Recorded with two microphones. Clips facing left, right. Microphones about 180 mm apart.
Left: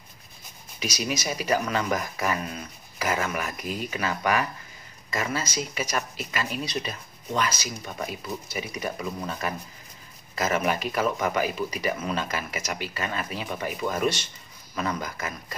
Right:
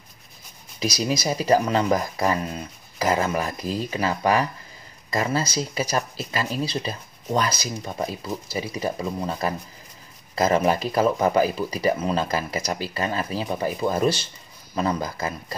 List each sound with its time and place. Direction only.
0.7 s speech: 35° right (ahead or behind)